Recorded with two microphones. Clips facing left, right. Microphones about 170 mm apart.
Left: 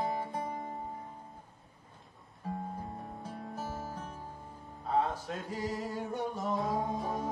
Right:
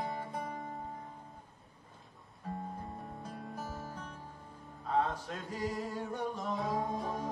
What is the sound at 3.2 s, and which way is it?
Music, 5° left (ahead or behind).